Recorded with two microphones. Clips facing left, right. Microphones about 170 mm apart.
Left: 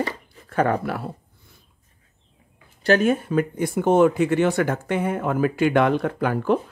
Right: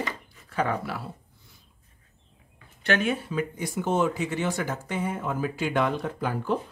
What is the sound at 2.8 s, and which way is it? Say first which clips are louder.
Speech: left 7 dB; 40° left (ahead or behind).